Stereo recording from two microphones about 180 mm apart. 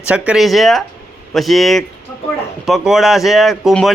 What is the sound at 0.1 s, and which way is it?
Speech, 5° right (ahead or behind).